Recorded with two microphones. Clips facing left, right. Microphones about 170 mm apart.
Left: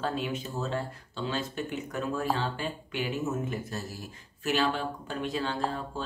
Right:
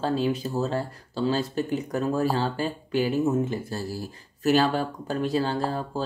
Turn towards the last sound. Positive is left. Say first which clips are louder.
# right 5 dB
turn(degrees=-35)  # may be behind; listen again after turning